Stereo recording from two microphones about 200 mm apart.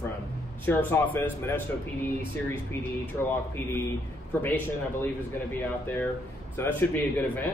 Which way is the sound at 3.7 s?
15° left (ahead or behind).